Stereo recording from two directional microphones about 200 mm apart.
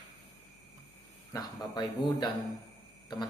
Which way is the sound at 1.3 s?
20° left (ahead or behind).